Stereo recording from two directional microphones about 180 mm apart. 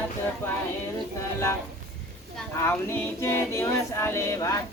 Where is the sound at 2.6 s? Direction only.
15° left (ahead or behind).